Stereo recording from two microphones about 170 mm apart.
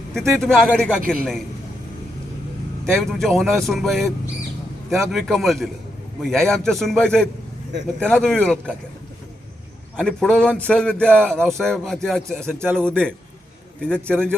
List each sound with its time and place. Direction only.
0.1 s a man's voice: 5° left (ahead or behind)
1.0 s a man's voice: 55° right (ahead or behind)
2.9 s a man's voice: centre (ahead or behind)
5.1 s a man's voice: centre (ahead or behind)
10.0 s a man's voice: 5° left (ahead or behind)